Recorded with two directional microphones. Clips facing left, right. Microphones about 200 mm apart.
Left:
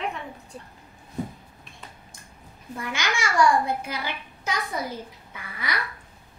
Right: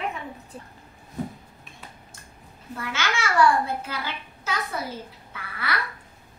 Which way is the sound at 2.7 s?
15° left (ahead or behind).